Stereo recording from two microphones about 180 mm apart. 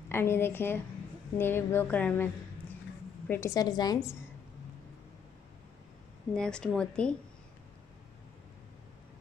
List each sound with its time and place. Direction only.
0.1 s a sound: 15° left (ahead or behind)
3.3 s a woman's voice: 15° left (ahead or behind)
6.3 s speech: 5° left (ahead or behind)